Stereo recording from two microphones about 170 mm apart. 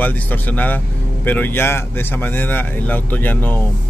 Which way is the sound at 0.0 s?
10° left (ahead or behind).